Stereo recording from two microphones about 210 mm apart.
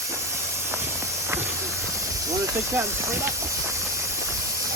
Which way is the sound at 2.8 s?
15° right (ahead or behind).